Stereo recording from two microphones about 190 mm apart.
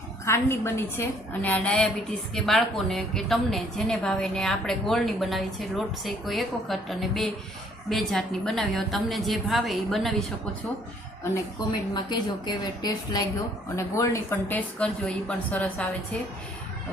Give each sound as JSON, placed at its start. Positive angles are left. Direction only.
{"t": 0.3, "sound": "a woman's voice", "side_deg": 15}
{"t": 11.9, "sound": "a woman's voice", "side_deg": 25}